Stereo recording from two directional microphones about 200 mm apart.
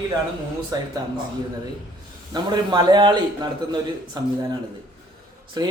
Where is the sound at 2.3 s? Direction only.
20° right (ahead or behind).